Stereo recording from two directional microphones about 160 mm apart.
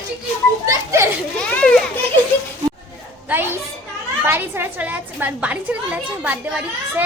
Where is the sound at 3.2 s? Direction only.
15° right (ahead or behind).